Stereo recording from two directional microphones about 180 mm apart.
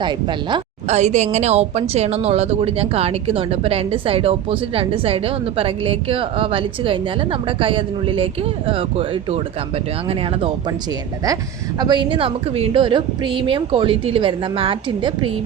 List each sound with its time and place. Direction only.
0.0 s a woman's voice: 25° right (ahead or behind)
0.9 s speech: 40° right (ahead or behind)
11.8 s a woman's voice: 25° right (ahead or behind)